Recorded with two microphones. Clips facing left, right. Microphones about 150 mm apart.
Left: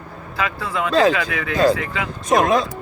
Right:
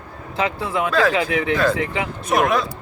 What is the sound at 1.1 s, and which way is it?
Speech, 25° right (ahead or behind).